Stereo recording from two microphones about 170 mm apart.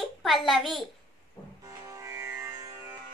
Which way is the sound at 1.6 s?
20° right (ahead or behind).